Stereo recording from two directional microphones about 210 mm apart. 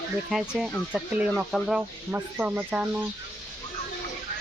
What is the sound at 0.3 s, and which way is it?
Speech, centre (ahead or behind).